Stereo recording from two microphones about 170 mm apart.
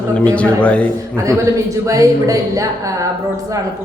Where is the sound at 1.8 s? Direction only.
20° right (ahead or behind).